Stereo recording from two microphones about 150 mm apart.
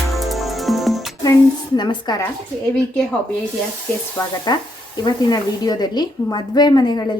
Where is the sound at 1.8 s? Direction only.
30° left (ahead or behind).